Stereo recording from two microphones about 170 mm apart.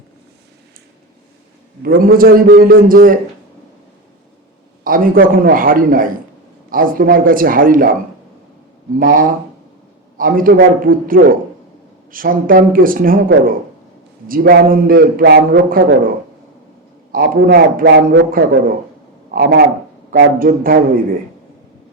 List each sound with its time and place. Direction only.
1.8 s a man's voice: 60° right (ahead or behind)
4.8 s a man's voice: 55° right (ahead or behind)
9.0 s a man's voice: 55° right (ahead or behind)
17.1 s a man's voice: 60° right (ahead or behind)
19.6 s a man's voice: 55° right (ahead or behind)